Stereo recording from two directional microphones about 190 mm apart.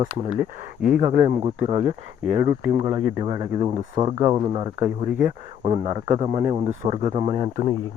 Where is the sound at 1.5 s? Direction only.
30° right (ahead or behind).